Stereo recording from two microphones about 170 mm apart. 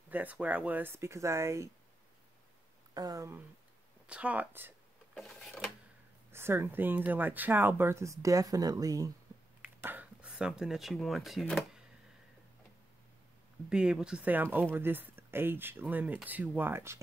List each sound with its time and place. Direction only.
0.1 s speech: 10° right (ahead or behind)
2.9 s speech: 20° right (ahead or behind)
4.1 s speech: 5° right (ahead or behind)
5.1 s a sound: centre (ahead or behind)
6.3 s speech: 15° right (ahead or behind)
9.8 s speech: 10° right (ahead or behind)
13.7 s speech: 5° right (ahead or behind)